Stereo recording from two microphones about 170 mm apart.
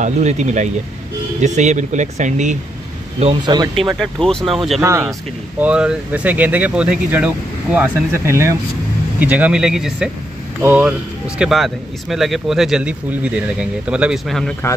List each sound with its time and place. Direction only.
0.0 s speech: 40° right (ahead or behind)
3.4 s speech: 25° right (ahead or behind)
4.0 s speech: 5° left (ahead or behind)
4.8 s speech: 15° right (ahead or behind); by 14.5 s centre (ahead or behind)